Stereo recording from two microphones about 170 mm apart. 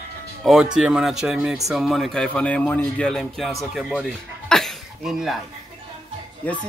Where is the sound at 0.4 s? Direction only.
Centre (ahead or behind).